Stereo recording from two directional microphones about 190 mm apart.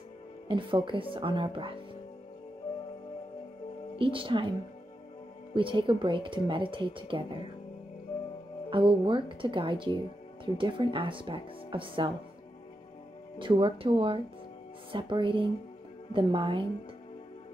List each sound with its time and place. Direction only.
0.5 s speech: 25° right (ahead or behind)
4.0 s speech: 25° right (ahead or behind)
5.5 s speech: 25° right (ahead or behind)
8.6 s speech: 25° right (ahead or behind)
13.4 s speech: 25° right (ahead or behind)